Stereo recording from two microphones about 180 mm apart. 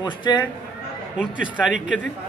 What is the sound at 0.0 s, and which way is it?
Speech, 25° left (ahead or behind).